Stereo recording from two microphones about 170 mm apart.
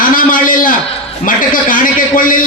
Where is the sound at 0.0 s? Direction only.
55° left (ahead or behind).